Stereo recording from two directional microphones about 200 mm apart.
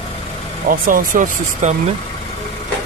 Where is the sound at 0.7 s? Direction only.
45° right (ahead or behind).